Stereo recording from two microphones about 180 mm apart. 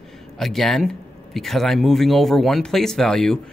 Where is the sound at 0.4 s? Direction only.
Centre (ahead or behind).